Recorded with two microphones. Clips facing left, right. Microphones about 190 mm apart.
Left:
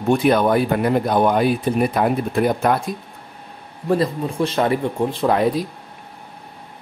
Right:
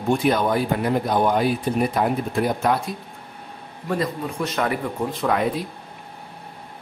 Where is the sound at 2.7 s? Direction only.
55° left (ahead or behind).